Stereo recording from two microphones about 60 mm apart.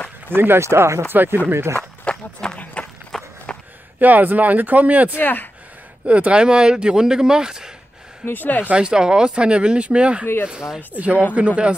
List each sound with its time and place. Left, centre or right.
0.3 s speech: right
0.6 s speech: right
1.0 s speech: right
2.0 s run: centre
3.1 s skateboard: centre
4.0 s speech: right
5.2 s speech: left
6.0 s speech: right
8.3 s speech: left
8.6 s speech: centre
10.2 s speech: left
10.9 s speech: right